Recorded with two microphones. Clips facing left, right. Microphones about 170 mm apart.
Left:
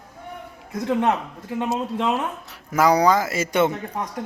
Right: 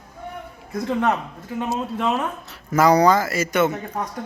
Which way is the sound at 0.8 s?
15° left (ahead or behind).